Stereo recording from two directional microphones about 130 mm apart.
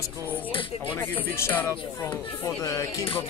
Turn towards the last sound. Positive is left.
turn(degrees=20)  # may be behind; listen again after turning